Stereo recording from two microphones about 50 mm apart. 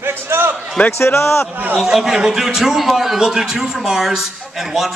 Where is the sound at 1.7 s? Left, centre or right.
Centre.